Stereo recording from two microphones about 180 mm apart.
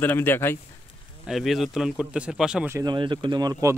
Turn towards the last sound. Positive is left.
turn(degrees=-20)  # may be behind; listen again after turning